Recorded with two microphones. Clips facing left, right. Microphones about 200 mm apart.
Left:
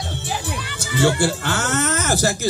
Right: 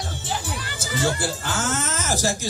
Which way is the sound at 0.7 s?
70° left (ahead or behind).